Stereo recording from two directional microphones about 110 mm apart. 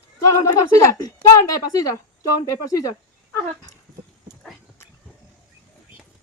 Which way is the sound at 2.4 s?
30° left (ahead or behind).